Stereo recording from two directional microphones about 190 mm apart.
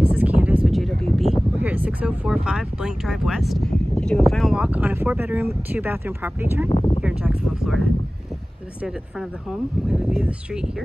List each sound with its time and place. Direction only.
0.1 s speech: 10° right (ahead or behind)
6.7 s speech: 30° left (ahead or behind)
7.0 s a sound: 5° right (ahead or behind)
9.5 s speech: 5° right (ahead or behind)